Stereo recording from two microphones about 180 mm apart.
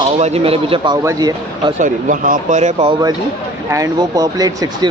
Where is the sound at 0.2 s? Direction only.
30° right (ahead or behind).